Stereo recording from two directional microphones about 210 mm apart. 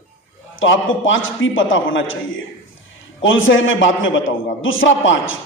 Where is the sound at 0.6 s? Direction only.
65° left (ahead or behind).